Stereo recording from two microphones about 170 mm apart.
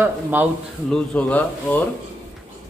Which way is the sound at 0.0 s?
10° right (ahead or behind).